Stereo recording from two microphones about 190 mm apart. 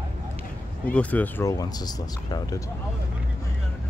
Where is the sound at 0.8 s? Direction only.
10° left (ahead or behind).